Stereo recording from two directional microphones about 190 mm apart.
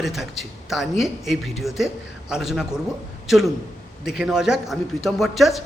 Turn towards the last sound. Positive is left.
turn(degrees=0)  # may be behind; listen again after turning